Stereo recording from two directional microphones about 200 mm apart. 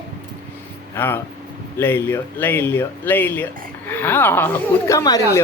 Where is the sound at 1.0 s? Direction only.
10° left (ahead or behind).